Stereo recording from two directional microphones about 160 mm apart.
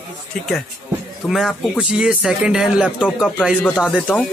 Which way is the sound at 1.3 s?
5° right (ahead or behind).